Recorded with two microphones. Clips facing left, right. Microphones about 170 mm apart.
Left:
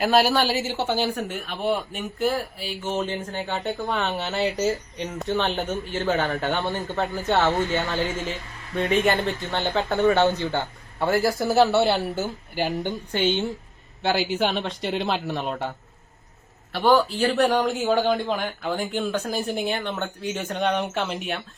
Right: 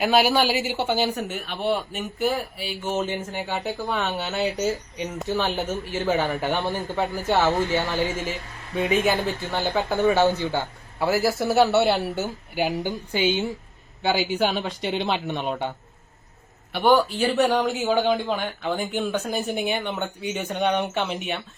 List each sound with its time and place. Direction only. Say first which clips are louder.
0.0 s speech: even; centre (ahead or behind)
0.5 s speech: right 1 dB; 15° right (ahead or behind); by 15.7 s centre (ahead or behind)
16.7 s speech: even; centre (ahead or behind)